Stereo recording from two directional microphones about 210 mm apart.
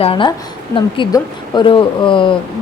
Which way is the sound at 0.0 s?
25° left (ahead or behind).